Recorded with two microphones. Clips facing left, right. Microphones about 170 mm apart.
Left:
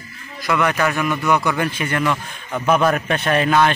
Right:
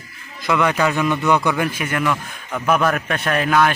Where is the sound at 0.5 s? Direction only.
15° right (ahead or behind).